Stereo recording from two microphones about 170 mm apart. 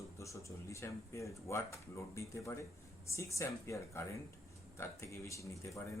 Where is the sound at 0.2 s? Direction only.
15° left (ahead or behind).